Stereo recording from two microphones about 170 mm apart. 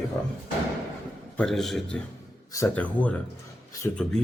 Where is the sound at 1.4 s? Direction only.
Centre (ahead or behind).